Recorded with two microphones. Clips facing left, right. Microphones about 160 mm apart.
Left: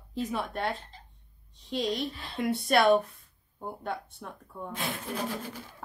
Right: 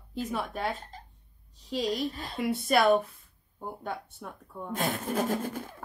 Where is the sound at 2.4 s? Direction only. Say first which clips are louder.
Even; centre (ahead or behind).